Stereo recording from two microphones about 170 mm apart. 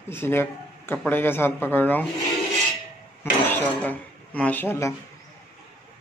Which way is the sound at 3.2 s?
15° left (ahead or behind).